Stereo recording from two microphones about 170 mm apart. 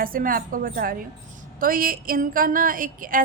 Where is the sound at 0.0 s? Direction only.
55° right (ahead or behind).